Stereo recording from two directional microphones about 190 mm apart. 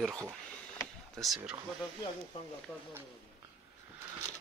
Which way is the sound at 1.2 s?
5° right (ahead or behind).